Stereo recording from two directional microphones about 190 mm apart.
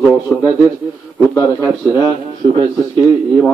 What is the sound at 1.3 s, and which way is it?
Speech, 15° left (ahead or behind).